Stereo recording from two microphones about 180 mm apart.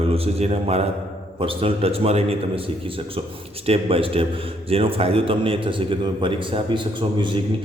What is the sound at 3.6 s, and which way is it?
A man's voice, 30° right (ahead or behind).